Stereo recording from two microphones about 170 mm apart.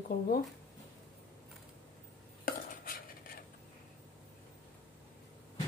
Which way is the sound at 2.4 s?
55° left (ahead or behind).